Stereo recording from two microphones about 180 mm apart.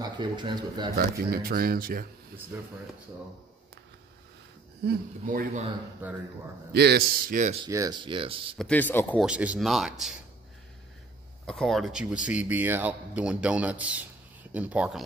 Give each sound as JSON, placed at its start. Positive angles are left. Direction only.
{"t": 0.0, "sound": "speech", "side_deg": -25}
{"t": 0.9, "sound": "speech", "side_deg": -55}
{"t": 2.5, "sound": "speech", "side_deg": -10}
{"t": 4.8, "sound": "speech", "side_deg": -50}
{"t": 6.0, "sound": "speech", "side_deg": -10}
{"t": 6.7, "sound": "speech", "side_deg": -65}
{"t": 7.6, "sound": "speech", "side_deg": -20}
{"t": 8.5, "sound": "speech", "side_deg": 10}
{"t": 9.2, "sound": "speech", "side_deg": -5}
{"t": 11.4, "sound": "speech", "side_deg": 0}